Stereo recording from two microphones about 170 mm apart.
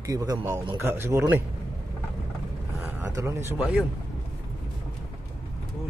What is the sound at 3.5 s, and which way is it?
Speech, 10° right (ahead or behind).